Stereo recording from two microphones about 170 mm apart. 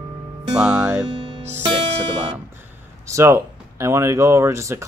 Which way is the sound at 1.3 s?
40° right (ahead or behind).